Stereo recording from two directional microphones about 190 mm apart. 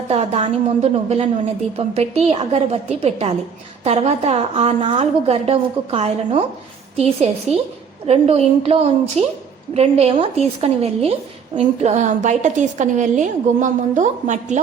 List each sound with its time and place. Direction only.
0.1 s a woman's voice: 35° right (ahead or behind)